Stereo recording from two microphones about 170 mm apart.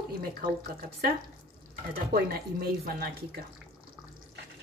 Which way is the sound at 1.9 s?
60° right (ahead or behind).